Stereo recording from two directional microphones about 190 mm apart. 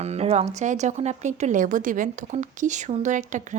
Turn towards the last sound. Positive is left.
turn(degrees=-40)  # may be behind; listen again after turning